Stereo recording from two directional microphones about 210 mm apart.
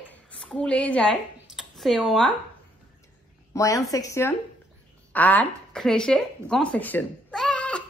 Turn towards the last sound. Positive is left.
turn(degrees=5)  # may be behind; listen again after turning